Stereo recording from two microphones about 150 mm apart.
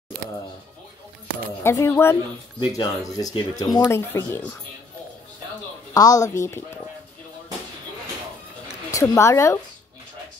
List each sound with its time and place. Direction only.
1.6 s speech: 15° left (ahead or behind)
5.9 s speech: 25° left (ahead or behind)
8.9 s speech: 20° left (ahead or behind)